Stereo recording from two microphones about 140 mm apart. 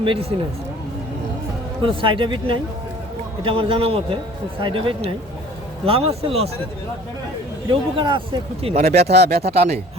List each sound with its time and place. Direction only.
0.0 s speech: 40° right (ahead or behind)
1.8 s a man's voice: 35° right (ahead or behind)
7.7 s a man's voice: 35° right (ahead or behind)